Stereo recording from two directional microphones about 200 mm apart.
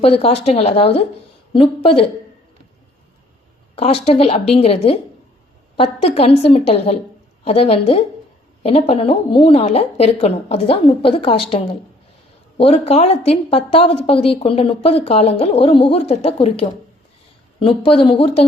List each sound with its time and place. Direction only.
0.0 s a woman's voice: 30° left (ahead or behind)
3.8 s a woman's voice: 30° left (ahead or behind)